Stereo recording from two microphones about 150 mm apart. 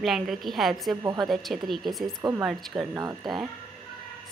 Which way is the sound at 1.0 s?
25° right (ahead or behind).